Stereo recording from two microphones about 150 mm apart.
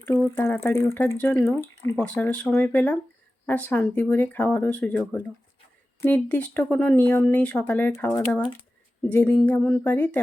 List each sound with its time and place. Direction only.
0.0 s speech: 15° left (ahead or behind)
2.1 s speech: 10° left (ahead or behind)